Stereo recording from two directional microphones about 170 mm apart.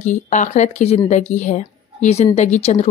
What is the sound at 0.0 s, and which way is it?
A woman's voice, 45° left (ahead or behind).